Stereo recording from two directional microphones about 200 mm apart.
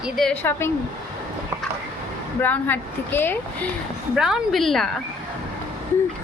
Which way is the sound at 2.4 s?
10° left (ahead or behind).